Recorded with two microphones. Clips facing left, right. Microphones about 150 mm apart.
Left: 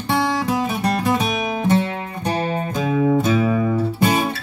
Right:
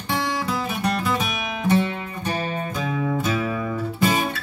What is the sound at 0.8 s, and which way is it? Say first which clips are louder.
Music: left 3 dB; 35° left (ahead or behind).